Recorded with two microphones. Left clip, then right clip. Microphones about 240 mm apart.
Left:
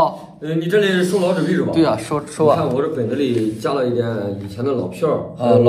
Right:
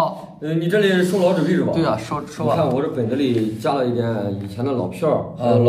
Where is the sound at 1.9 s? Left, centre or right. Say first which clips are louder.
Left 3 dB; left.